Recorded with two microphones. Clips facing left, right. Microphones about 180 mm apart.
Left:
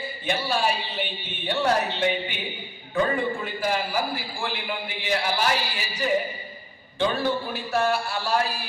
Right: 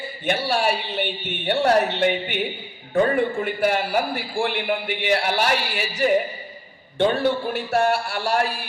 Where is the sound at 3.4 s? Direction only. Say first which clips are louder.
Right 5 dB; 60° right (ahead or behind).